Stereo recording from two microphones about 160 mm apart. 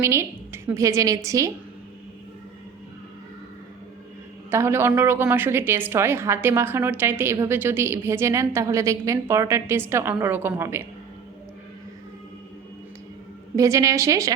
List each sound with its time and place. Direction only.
0.0 s a woman's voice: 15° right (ahead or behind)
4.5 s a woman's voice: 15° right (ahead or behind)
13.6 s a woman's voice: 20° right (ahead or behind)